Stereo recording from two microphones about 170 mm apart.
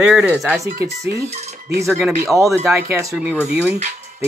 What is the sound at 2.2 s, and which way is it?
Speech, 15° right (ahead or behind).